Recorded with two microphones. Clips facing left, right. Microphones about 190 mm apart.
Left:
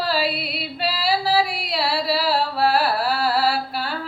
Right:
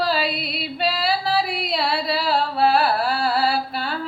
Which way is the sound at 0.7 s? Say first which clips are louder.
Even; 5° left (ahead or behind).